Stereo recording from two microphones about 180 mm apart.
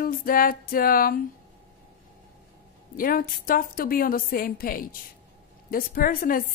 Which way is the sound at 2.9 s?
50° left (ahead or behind).